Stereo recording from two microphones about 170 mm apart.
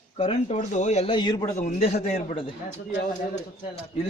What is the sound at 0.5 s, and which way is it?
Speech, 45° left (ahead or behind).